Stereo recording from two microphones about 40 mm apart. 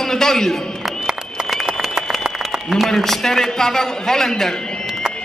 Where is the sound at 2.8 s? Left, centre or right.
Centre.